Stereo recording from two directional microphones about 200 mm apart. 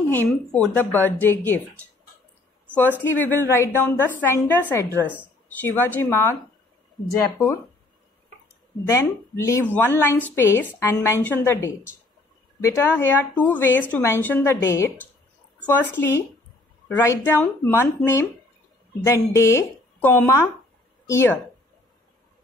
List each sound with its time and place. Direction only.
0.1 s a woman's voice: 5° left (ahead or behind)
3.0 s a woman's voice: 10° left (ahead or behind)
4.9 s speech: 5° right (ahead or behind)
5.6 s a woman's voice: 10° left (ahead or behind)
8.8 s a woman's voice: 15° left (ahead or behind)